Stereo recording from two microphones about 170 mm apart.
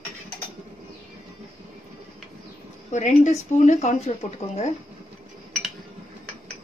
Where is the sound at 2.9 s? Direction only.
45° left (ahead or behind).